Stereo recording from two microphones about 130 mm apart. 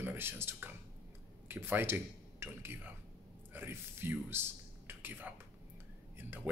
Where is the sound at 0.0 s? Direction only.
15° right (ahead or behind).